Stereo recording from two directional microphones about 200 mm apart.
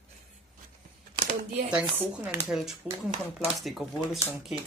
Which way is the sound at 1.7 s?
5° right (ahead or behind).